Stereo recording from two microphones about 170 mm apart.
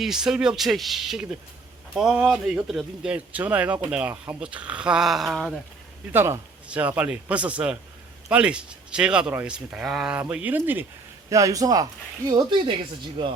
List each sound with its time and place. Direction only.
0.0 s speech: 5° right (ahead or behind)
6.1 s speech: 15° right (ahead or behind)